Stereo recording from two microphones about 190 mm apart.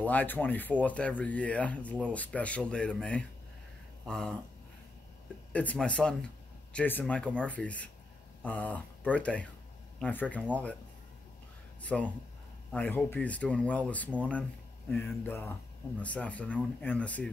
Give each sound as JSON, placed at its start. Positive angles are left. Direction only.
{"t": 0.0, "sound": "speech", "side_deg": 10}
{"t": 5.5, "sound": "speech", "side_deg": 5}
{"t": 11.8, "sound": "speech", "side_deg": 5}